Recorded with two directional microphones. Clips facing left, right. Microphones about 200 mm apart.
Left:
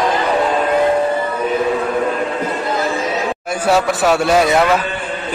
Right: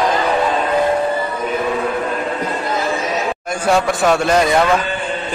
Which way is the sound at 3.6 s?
5° left (ahead or behind).